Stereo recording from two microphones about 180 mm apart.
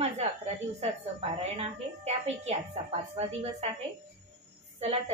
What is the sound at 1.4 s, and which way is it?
A woman's voice, 35° right (ahead or behind).